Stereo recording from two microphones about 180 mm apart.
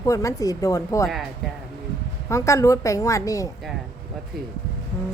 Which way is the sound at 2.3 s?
15° left (ahead or behind).